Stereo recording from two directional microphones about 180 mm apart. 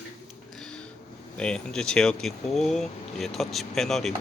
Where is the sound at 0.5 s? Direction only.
5° left (ahead or behind).